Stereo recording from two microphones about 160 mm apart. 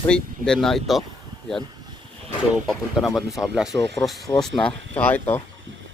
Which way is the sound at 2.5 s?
Centre (ahead or behind).